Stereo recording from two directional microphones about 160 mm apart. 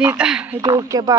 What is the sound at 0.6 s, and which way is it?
Speech, 20° right (ahead or behind).